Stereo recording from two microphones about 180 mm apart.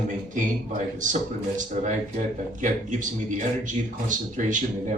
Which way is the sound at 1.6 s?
45° right (ahead or behind).